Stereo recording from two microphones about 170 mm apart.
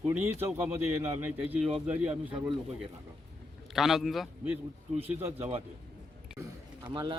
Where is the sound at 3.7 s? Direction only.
Centre (ahead or behind).